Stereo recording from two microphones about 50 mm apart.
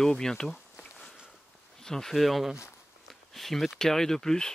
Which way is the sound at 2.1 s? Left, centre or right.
Centre.